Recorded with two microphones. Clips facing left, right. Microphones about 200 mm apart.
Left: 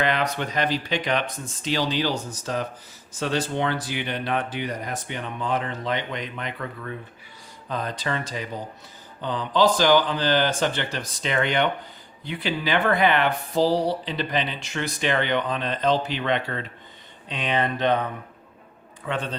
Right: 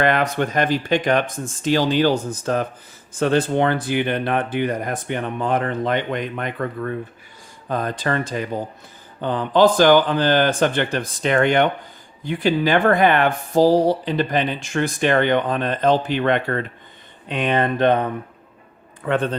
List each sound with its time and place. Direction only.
0.0 s speech: 50° right (ahead or behind)
19.0 s a man's voice: 55° right (ahead or behind)